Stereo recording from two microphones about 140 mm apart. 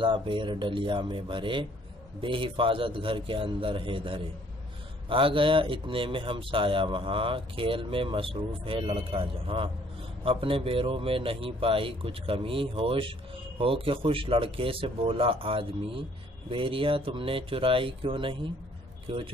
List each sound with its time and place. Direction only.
0.0 s speech: 35° right (ahead or behind)